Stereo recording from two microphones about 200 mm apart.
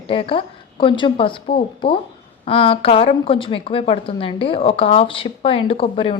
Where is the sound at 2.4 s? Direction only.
25° left (ahead or behind).